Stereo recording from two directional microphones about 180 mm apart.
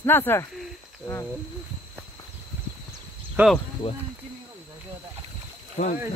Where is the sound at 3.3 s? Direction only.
Centre (ahead or behind).